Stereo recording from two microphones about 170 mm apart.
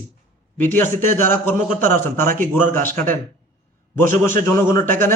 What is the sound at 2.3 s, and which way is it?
Speech, 50° right (ahead or behind).